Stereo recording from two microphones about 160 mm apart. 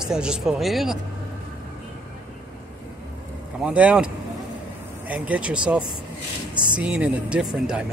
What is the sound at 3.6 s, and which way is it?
Speech, 5° right (ahead or behind).